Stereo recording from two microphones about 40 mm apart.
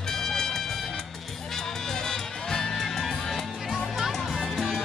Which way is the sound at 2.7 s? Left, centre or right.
Centre.